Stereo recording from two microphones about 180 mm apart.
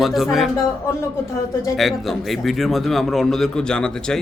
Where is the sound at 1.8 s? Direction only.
Centre (ahead or behind).